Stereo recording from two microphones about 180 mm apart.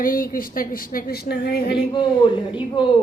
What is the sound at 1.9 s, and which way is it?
Speech, 25° left (ahead or behind).